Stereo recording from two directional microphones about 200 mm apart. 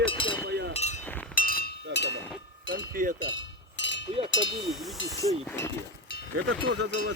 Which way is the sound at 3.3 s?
65° left (ahead or behind).